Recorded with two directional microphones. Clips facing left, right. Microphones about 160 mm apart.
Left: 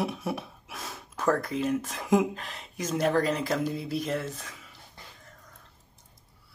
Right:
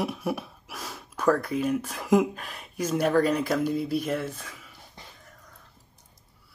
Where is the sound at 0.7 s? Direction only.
25° left (ahead or behind).